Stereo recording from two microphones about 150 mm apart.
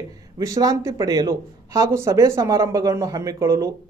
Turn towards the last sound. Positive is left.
turn(degrees=-20)  # may be behind; listen again after turning